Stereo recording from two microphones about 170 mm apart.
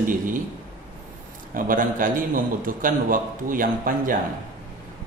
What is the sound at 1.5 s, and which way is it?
A man's voice, 55° right (ahead or behind).